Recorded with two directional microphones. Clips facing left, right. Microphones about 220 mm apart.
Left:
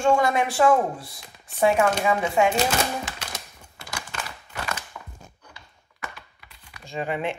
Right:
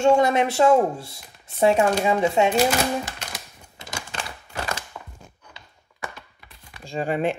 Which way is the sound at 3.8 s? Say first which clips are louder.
Right 1 dB; 25° right (ahead or behind).